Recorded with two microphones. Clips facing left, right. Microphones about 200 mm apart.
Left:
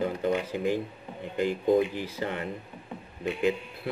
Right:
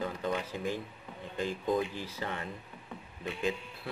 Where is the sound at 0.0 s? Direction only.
25° left (ahead or behind).